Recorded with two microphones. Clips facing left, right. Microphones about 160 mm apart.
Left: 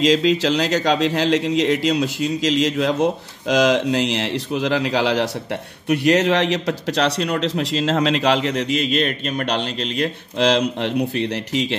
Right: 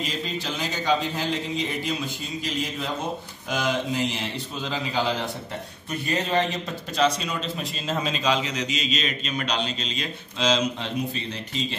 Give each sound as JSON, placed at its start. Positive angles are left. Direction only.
{"t": 0.0, "sound": "a man's voice", "side_deg": 90}